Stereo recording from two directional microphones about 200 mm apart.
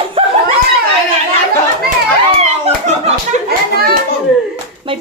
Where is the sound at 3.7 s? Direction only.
50° right (ahead or behind).